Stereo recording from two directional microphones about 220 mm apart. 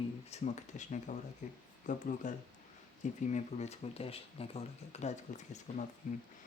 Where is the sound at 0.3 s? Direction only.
30° left (ahead or behind).